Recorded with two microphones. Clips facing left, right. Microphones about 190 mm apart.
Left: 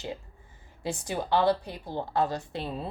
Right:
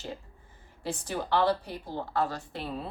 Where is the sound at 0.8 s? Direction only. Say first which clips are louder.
Left 2 dB; 15° left (ahead or behind).